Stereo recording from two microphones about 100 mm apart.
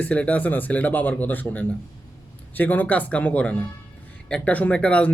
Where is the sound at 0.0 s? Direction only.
15° left (ahead or behind).